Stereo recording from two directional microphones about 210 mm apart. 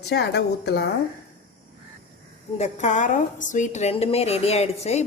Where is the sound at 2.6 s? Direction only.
35° left (ahead or behind).